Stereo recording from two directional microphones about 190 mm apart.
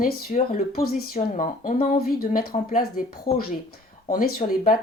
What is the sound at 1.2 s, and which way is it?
Speech, 40° left (ahead or behind).